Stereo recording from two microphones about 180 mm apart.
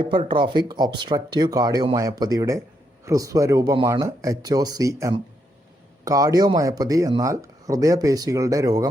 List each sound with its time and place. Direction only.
0.0 s speech: 25° right (ahead or behind)